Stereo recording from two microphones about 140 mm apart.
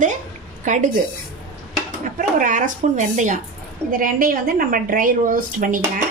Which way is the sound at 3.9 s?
85° right.